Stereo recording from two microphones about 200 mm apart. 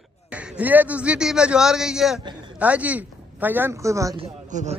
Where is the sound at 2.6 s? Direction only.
5° right (ahead or behind).